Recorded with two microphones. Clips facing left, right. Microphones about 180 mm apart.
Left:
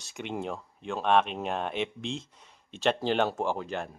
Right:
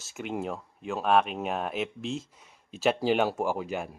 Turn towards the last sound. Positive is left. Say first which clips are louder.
# right 1 dB
turn(degrees=-10)  # may be behind; listen again after turning